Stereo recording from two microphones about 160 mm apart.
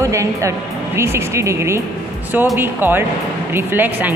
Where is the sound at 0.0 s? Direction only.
20° right (ahead or behind).